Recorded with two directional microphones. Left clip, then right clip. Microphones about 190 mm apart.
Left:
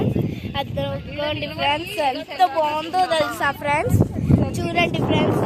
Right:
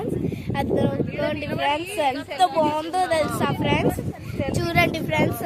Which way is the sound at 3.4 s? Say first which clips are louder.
Left 2 dB; 10° left (ahead or behind).